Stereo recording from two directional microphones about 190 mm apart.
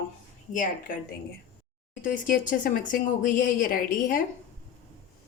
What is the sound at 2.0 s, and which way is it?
A woman's voice, 45° left (ahead or behind).